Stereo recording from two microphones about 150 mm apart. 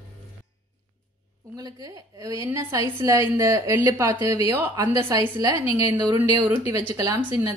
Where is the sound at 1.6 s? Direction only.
25° right (ahead or behind).